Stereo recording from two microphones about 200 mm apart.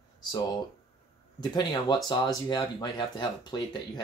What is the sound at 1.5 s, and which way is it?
Speech, 20° left (ahead or behind).